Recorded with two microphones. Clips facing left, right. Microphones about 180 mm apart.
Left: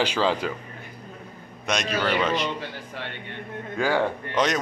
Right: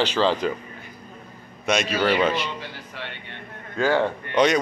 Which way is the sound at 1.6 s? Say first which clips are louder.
Right 4 dB; centre (ahead or behind).